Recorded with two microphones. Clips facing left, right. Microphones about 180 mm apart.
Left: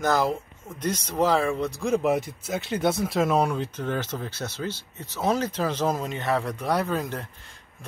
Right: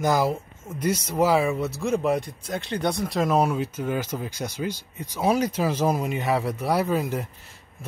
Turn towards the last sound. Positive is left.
turn(degrees=-10)  # may be behind; listen again after turning